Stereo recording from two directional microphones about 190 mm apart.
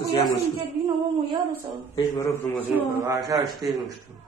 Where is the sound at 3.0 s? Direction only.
20° right (ahead or behind).